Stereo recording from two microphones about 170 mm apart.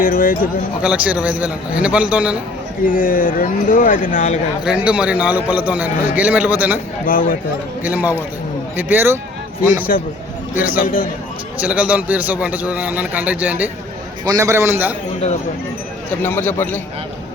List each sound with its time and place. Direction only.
0.0 s speech: 55° left (ahead or behind)
0.8 s a man's voice: 5° right (ahead or behind)
2.8 s speech: 55° left (ahead or behind)
4.6 s a man's voice: 5° right (ahead or behind)
7.0 s speech: 55° left (ahead or behind)
7.9 s a man's voice: 10° right (ahead or behind)
9.9 s speech: 55° left (ahead or behind)
10.5 s a man's voice: 10° right (ahead or behind)
10.8 s a man's voice: 55° left (ahead or behind)
11.6 s a man's voice: 10° right (ahead or behind)
14.3 s a man's voice: 20° right (ahead or behind)
16.2 s speech: 10° left (ahead or behind)